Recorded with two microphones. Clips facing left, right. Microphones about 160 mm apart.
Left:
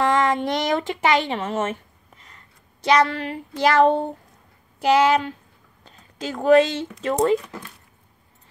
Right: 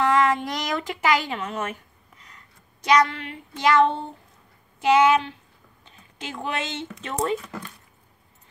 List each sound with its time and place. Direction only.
0.1 s speech: 25° left (ahead or behind)
1.6 s a sound: 25° left (ahead or behind)
2.8 s speech: 30° left (ahead or behind)